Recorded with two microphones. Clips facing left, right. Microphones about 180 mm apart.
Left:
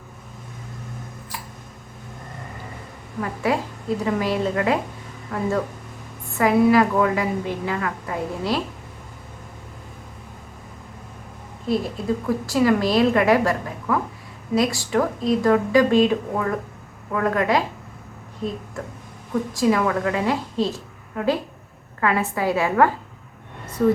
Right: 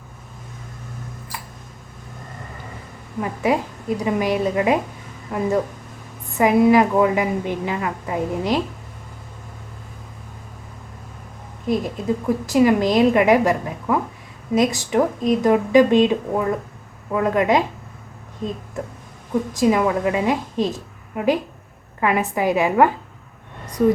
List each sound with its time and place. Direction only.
3.2 s a woman's voice: 20° right (ahead or behind)
11.6 s a woman's voice: 15° right (ahead or behind)
19.5 s a woman's voice: 20° right (ahead or behind)